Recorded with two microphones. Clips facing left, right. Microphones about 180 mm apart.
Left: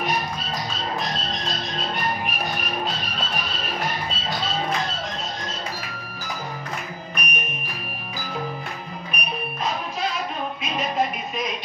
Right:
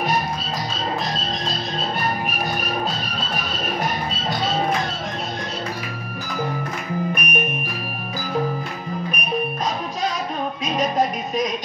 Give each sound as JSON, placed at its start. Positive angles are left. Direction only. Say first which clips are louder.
{"t": 7.2, "sound": "music", "louder": "right 6 dB", "side_deg": -55}
{"t": 10.6, "sound": "music", "louder": "right 4 dB", "side_deg": -40}